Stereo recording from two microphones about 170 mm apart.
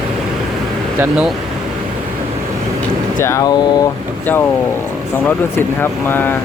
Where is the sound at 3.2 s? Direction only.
20° left (ahead or behind).